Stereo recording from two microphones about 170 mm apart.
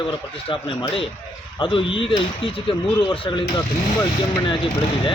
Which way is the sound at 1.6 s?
30° left (ahead or behind).